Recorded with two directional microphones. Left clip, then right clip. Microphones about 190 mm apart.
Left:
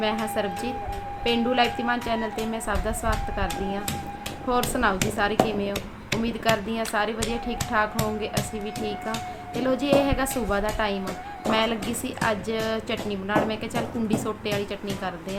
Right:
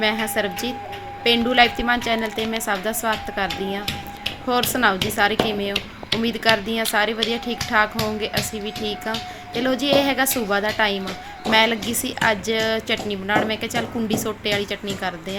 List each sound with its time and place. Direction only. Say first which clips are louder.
0.0 s speech: right 4 dB; 15° right (ahead or behind)